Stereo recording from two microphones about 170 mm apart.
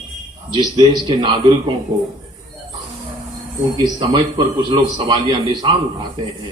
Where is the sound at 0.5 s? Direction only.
25° right (ahead or behind).